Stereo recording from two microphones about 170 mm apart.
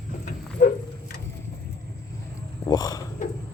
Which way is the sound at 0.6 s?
55° left (ahead or behind).